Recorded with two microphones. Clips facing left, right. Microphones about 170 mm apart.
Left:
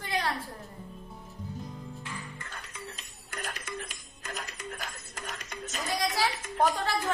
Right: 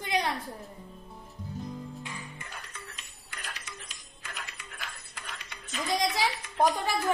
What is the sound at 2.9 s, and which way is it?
Music, 40° left (ahead or behind).